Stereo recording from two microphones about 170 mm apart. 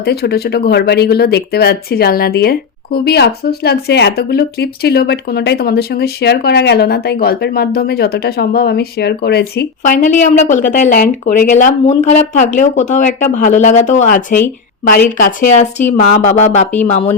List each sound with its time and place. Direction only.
0.0 s speech: 70° left (ahead or behind)
9.9 s speech: 45° left (ahead or behind)